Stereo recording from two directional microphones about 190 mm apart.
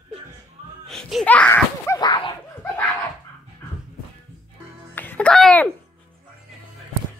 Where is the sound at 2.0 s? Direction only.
25° left (ahead or behind).